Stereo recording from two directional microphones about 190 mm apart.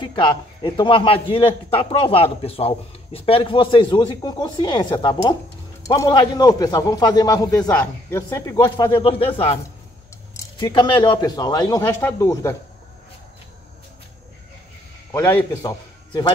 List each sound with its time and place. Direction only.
0.0 s a man's voice: 25° left (ahead or behind)
15.1 s a man's voice: 15° left (ahead or behind)